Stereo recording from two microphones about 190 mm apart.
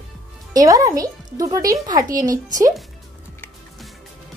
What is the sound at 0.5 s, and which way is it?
A woman's voice, 20° right (ahead or behind).